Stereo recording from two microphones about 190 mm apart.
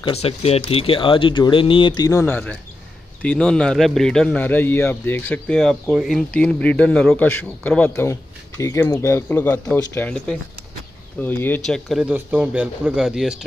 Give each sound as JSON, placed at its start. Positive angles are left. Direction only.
{"t": 0.0, "sound": "a man's voice", "side_deg": 30}